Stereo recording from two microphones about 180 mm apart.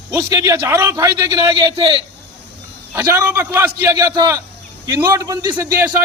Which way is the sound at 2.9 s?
15° right (ahead or behind).